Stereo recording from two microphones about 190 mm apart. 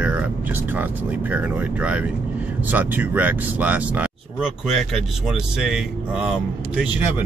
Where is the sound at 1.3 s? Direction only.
5° right (ahead or behind).